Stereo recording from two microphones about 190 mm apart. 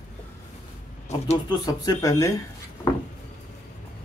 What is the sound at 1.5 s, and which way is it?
Speech, 20° left (ahead or behind).